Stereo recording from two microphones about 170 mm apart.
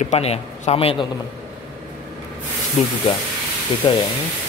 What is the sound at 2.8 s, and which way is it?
Speech, 40° left (ahead or behind).